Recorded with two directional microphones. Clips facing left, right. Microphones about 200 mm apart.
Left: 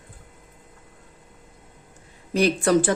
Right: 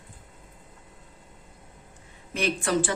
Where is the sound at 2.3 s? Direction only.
35° left (ahead or behind).